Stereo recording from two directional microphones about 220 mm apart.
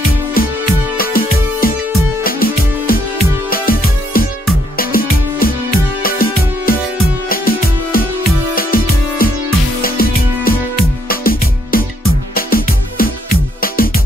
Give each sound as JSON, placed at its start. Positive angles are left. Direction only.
{"t": 0.9, "sound": "music", "side_deg": 40}